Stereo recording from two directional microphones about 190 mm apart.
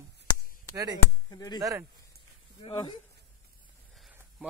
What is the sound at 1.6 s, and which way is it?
Speech, 15° right (ahead or behind).